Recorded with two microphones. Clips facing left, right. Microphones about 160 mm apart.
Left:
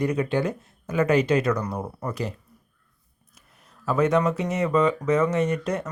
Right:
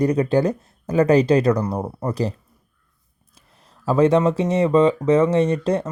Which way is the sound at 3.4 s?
30° right (ahead or behind).